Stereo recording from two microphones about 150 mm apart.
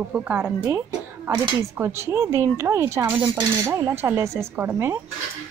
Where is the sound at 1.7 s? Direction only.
15° right (ahead or behind).